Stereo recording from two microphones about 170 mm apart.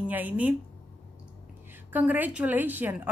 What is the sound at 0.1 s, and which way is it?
Speech, 10° right (ahead or behind).